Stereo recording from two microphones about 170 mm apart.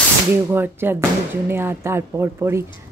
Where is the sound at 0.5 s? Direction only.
15° right (ahead or behind).